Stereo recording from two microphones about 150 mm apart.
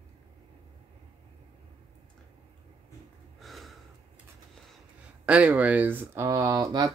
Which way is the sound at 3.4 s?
Centre (ahead or behind).